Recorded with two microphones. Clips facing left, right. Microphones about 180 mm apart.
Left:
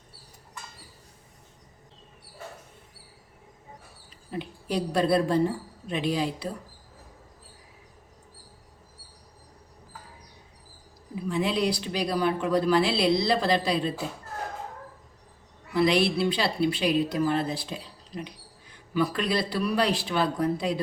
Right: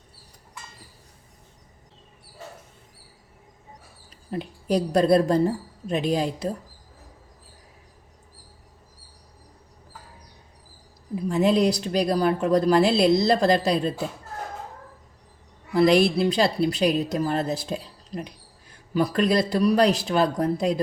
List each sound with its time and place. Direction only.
4.3 s speech: 40° right (ahead or behind)
11.1 s speech: 45° right (ahead or behind)
15.7 s speech: 45° right (ahead or behind)